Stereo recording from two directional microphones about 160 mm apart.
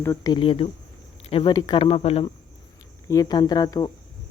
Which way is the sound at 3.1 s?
25° left (ahead or behind).